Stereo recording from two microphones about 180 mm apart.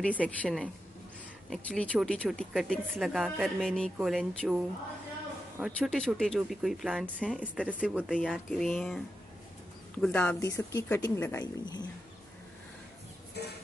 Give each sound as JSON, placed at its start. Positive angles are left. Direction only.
{"t": 0.0, "sound": "speech", "side_deg": 5}
{"t": 5.7, "sound": "speech", "side_deg": 5}
{"t": 7.5, "sound": "speech", "side_deg": -5}
{"t": 11.6, "sound": "speech", "side_deg": 25}
{"t": 13.4, "sound": "a sound", "side_deg": 65}